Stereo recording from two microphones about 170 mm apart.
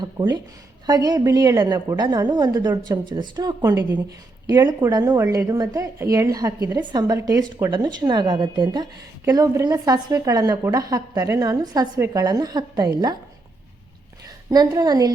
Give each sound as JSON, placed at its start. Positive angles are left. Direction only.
{"t": 0.0, "sound": "a sound", "side_deg": -25}
{"t": 0.9, "sound": "a woman's voice", "side_deg": -25}
{"t": 14.5, "sound": "a woman's voice", "side_deg": -20}